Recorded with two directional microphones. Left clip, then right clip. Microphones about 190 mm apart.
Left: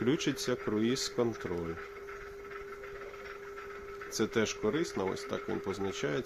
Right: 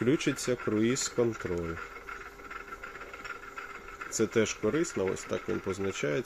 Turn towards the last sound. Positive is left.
turn(degrees=-15)  # may be behind; listen again after turning